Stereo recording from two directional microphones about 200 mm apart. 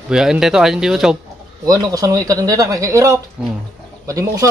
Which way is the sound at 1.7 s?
15° right (ahead or behind).